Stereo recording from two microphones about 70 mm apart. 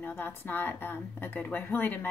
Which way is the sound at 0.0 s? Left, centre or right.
Left.